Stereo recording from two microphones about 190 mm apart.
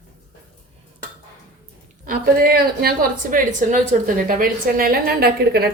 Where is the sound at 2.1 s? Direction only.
55° right (ahead or behind).